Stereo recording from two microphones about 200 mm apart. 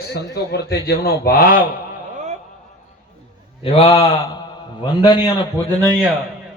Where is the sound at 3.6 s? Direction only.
30° left (ahead or behind).